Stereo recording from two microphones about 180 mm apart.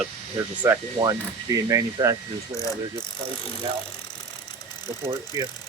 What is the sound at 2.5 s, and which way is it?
Pulleys, 15° left (ahead or behind).